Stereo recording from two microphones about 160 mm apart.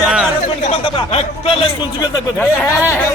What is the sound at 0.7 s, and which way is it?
Speech, 35° left (ahead or behind).